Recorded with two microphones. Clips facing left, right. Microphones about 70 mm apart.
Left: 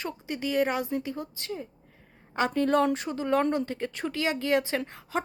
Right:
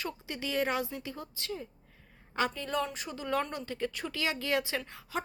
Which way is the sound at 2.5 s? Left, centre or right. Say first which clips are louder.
Left 10 dB; left.